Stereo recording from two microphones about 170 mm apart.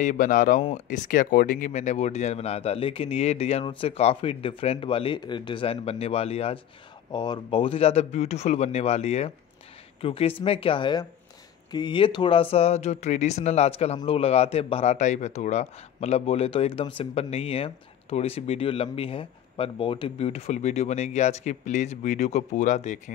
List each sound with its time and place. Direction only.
0.0 s speech: 50° left (ahead or behind)